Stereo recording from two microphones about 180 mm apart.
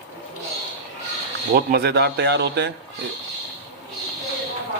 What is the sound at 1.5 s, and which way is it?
Speech, 60° right (ahead or behind).